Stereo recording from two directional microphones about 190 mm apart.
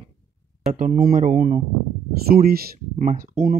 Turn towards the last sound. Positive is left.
turn(degrees=-45)  # may be behind; listen again after turning